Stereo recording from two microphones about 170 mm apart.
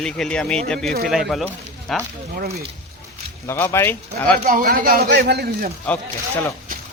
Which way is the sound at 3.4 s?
15° left (ahead or behind).